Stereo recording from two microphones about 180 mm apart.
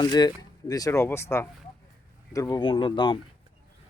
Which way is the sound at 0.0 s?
25° left (ahead or behind).